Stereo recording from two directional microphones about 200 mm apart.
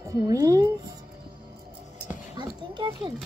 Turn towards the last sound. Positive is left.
turn(degrees=-20)  # may be behind; listen again after turning